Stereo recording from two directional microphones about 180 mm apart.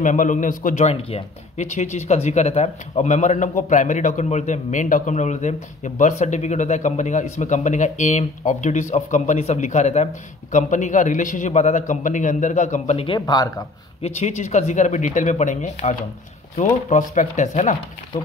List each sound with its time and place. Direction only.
0.0 s a man's voice: 45° left (ahead or behind); by 13.7 s 20° left (ahead or behind)
14.0 s a man's voice: 40° left (ahead or behind)